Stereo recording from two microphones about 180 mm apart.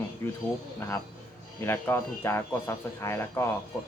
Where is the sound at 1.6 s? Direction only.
10° left (ahead or behind).